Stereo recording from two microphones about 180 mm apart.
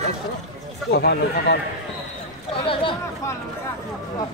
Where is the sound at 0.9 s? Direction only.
65° left (ahead or behind).